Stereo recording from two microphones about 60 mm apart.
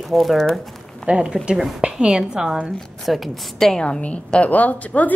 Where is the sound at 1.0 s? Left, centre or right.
Centre.